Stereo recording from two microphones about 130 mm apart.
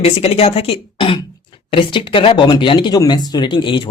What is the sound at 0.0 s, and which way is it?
Speech, 50° left (ahead or behind).